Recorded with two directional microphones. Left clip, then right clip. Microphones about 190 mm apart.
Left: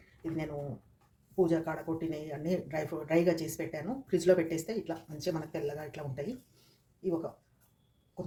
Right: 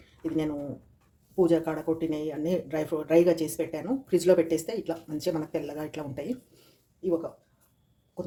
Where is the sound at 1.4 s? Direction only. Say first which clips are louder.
Right 6 dB; 35° right (ahead or behind).